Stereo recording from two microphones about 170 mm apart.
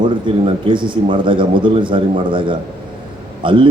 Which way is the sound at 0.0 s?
30° right (ahead or behind).